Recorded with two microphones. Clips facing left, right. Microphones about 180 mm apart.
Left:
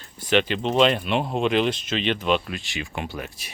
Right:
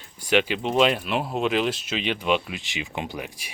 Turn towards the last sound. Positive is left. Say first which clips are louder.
# even
turn(degrees=-15)  # may be behind; listen again after turning